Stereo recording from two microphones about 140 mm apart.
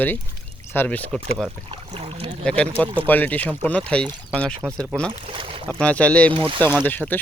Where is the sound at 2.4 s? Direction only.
10° left (ahead or behind).